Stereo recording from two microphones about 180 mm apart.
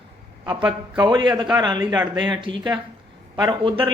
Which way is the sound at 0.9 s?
25° right (ahead or behind).